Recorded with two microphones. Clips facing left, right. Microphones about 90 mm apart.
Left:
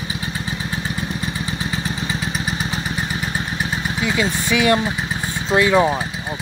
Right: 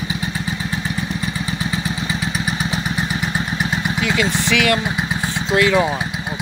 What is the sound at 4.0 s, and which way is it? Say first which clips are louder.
Speech: even; 15° left (ahead or behind).